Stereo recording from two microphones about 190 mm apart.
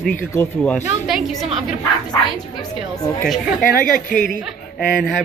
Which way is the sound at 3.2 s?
Centre (ahead or behind).